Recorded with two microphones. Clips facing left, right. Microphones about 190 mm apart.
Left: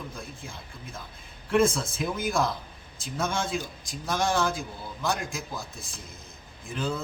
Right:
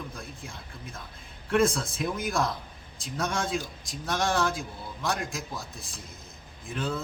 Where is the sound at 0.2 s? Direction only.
Centre (ahead or behind).